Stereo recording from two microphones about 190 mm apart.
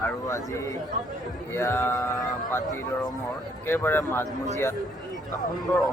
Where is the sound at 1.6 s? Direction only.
15° left (ahead or behind).